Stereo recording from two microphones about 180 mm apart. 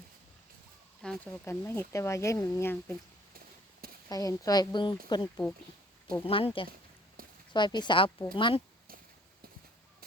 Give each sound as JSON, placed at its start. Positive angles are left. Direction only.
{"t": 1.0, "sound": "speech", "side_deg": 5}
{"t": 1.5, "sound": "speech", "side_deg": 15}
{"t": 3.3, "sound": "a sound", "side_deg": -55}
{"t": 4.1, "sound": "speech", "side_deg": 20}
{"t": 7.2, "sound": "a sound", "side_deg": -55}
{"t": 7.5, "sound": "speech", "side_deg": 25}